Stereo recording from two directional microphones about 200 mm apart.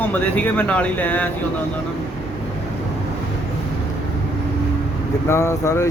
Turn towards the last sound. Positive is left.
turn(degrees=15)  # may be behind; listen again after turning